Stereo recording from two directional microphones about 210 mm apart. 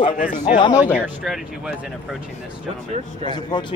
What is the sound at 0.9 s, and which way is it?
Speech, centre (ahead or behind).